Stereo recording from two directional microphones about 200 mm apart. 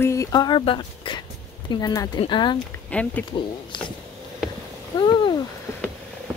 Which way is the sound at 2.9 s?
5° left (ahead or behind).